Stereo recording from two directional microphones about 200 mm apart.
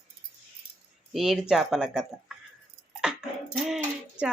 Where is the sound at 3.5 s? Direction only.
Centre (ahead or behind).